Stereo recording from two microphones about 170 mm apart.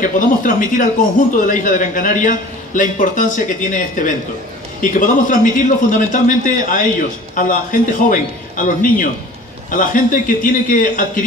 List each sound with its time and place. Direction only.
0.0 s a man's voice: 50° left (ahead or behind)